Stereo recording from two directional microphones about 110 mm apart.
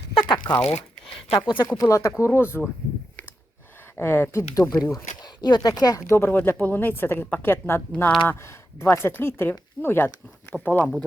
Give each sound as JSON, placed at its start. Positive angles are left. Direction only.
{"t": 0.1, "sound": "crumpling", "side_deg": 50}
{"t": 0.6, "sound": "speech", "side_deg": 65}
{"t": 1.8, "sound": "speech", "side_deg": 30}
{"t": 3.9, "sound": "speech", "side_deg": 20}
{"t": 5.2, "sound": "speech", "side_deg": 40}